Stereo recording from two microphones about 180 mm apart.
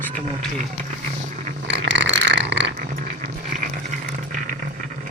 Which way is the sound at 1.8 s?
85° right.